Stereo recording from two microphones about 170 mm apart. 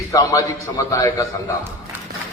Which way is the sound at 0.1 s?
20° left (ahead or behind).